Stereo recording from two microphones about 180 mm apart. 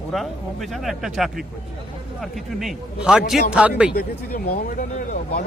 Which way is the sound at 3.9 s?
60° left (ahead or behind).